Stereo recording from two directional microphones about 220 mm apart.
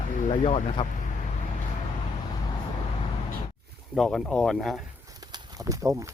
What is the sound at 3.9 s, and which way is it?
Speech, centre (ahead or behind).